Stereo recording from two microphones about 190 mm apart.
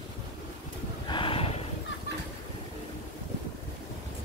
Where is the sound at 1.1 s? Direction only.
25° left (ahead or behind).